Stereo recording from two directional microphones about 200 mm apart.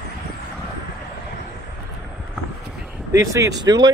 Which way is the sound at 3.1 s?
15° right (ahead or behind).